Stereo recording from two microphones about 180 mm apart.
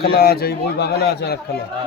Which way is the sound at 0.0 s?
60° left (ahead or behind).